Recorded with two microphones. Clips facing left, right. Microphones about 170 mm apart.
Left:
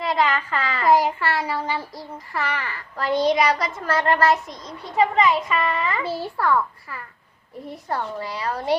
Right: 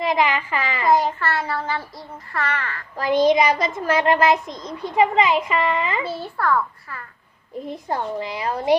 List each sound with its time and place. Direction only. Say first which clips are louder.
0.0 s a sound: right 2 dB; 15° right (ahead or behind)
0.9 s child singing: even; centre (ahead or behind)
3.0 s child singing: right 3 dB; 15° right (ahead or behind)
3.8 s a child's voice: right 2 dB; 15° right (ahead or behind)
6.3 s child singing: right 1 dB; 5° left (ahead or behind)
7.5 s a child's voice: right 2 dB; 20° right (ahead or behind)